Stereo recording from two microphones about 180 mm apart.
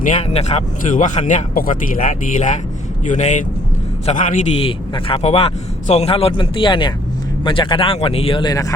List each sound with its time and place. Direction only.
0.0 s speech: 40° left (ahead or behind)
4.9 s speech: 30° left (ahead or behind)